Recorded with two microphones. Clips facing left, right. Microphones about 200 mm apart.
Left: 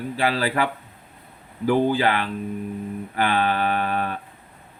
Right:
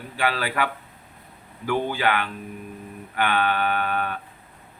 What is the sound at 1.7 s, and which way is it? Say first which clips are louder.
Mantra: left 4 dB; 30° left (ahead or behind).